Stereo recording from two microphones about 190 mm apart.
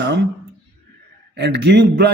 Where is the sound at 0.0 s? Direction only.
65° right (ahead or behind).